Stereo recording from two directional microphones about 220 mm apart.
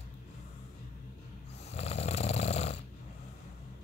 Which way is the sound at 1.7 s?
30° left (ahead or behind).